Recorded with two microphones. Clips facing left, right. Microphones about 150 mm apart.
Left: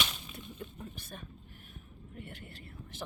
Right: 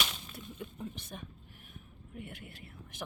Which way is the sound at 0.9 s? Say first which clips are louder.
Right 1 dB; 15° right (ahead or behind).